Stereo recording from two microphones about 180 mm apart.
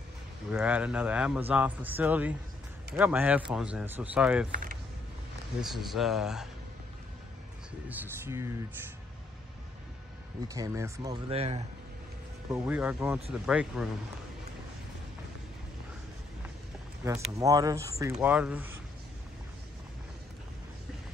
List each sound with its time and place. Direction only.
0.5 s speech: 5° right (ahead or behind)
5.6 s speech: centre (ahead or behind)
7.9 s speech: 10° right (ahead or behind)
10.5 s speech: 15° right (ahead or behind)
11.3 s speech: 35° right (ahead or behind)
12.4 s speech: 10° right (ahead or behind)
17.0 s speech: 15° right (ahead or behind)